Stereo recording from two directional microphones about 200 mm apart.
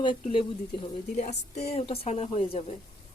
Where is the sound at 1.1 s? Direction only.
35° left (ahead or behind).